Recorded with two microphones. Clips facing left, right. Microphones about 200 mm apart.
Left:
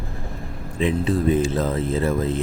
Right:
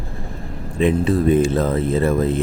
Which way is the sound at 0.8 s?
55° right (ahead or behind).